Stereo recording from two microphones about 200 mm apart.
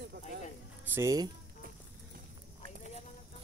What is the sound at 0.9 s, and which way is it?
Speech, 15° right (ahead or behind).